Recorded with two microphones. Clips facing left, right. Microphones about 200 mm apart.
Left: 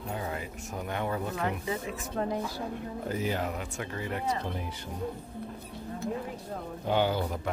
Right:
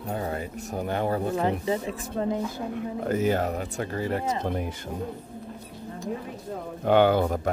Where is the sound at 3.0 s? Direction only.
50° right (ahead or behind).